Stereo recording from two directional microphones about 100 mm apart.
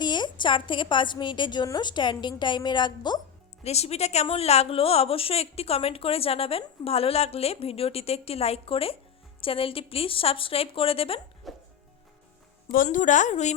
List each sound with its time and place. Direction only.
0.0 s a woman's voice: 50° left (ahead or behind)
3.6 s a woman's voice: 90° left; by 11.2 s 70° left (ahead or behind)
11.4 s music: centre (ahead or behind)